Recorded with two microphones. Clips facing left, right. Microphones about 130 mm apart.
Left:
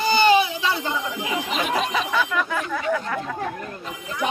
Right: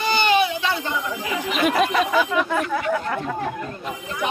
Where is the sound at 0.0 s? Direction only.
35° left (ahead or behind).